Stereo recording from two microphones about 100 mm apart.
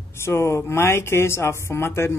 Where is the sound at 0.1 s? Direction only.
25° left (ahead or behind).